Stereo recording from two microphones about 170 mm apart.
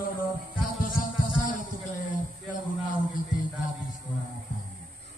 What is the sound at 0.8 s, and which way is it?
Music, 55° left (ahead or behind).